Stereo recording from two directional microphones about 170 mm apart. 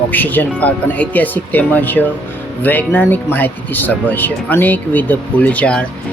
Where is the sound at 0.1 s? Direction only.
10° left (ahead or behind).